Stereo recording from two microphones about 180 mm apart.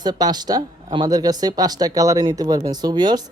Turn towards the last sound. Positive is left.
turn(degrees=-25)  # may be behind; listen again after turning